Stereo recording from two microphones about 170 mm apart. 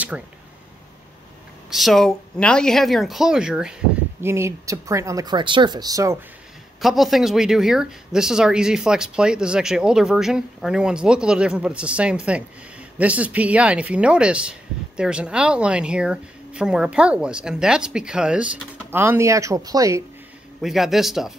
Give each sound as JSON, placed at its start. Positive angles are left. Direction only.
{"t": 0.1, "sound": "speech", "side_deg": -5}
{"t": 1.7, "sound": "speech", "side_deg": 0}
{"t": 4.2, "sound": "speech", "side_deg": -15}
{"t": 6.8, "sound": "speech", "side_deg": 0}
{"t": 20.6, "sound": "speech", "side_deg": 0}